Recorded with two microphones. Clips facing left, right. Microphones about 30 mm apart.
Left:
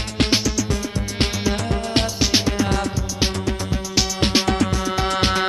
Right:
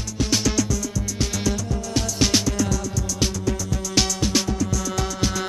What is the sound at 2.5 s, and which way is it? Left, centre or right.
Music, left.